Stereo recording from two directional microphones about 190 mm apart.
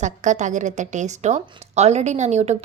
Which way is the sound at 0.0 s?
40° right (ahead or behind).